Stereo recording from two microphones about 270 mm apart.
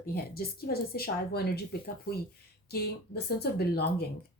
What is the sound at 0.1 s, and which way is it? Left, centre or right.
Speech, left.